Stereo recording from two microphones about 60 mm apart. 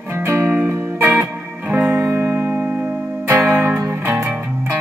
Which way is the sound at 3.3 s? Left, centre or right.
Right.